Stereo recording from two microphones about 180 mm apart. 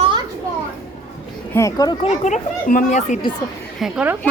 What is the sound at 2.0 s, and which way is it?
Speech, 40° left (ahead or behind).